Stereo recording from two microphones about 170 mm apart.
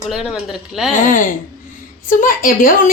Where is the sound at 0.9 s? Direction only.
50° left (ahead or behind).